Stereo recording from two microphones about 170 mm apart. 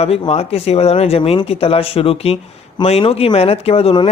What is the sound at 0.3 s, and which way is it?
Speech, 35° left (ahead or behind).